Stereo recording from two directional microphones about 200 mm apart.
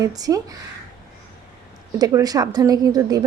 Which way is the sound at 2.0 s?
20° right (ahead or behind).